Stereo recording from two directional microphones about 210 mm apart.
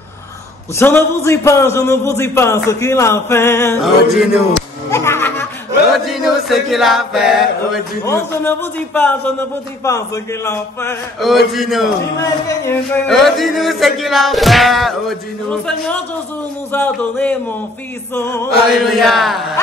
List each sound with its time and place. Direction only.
0.7 s a man's voice: 10° left (ahead or behind)
3.8 s music: centre (ahead or behind)
4.9 s music: 10° left (ahead or behind)
5.9 s chant: centre (ahead or behind)
8.0 s a man's voice: 10° left (ahead or behind)
11.1 s music: centre (ahead or behind)
12.2 s a man's voice: 15° left (ahead or behind)
13.0 s music: centre (ahead or behind)
16.7 s a man's voice: 10° left (ahead or behind)
18.7 s music: centre (ahead or behind)